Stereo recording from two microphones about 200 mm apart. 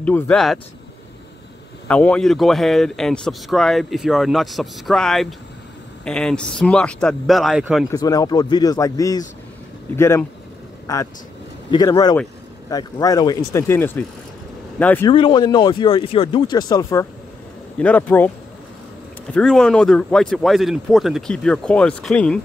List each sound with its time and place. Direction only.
0.0 s a man's voice: 5° left (ahead or behind)
1.9 s a man's voice: 5° left (ahead or behind)
7.9 s speech: 20° left (ahead or behind)
15.0 s speech: 25° left (ahead or behind); by 18.3 s 10° left (ahead or behind)
19.3 s a man's voice: 5° left (ahead or behind)